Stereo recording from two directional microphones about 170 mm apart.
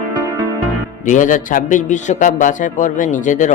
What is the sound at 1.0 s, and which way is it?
A man's voice, 50° left (ahead or behind).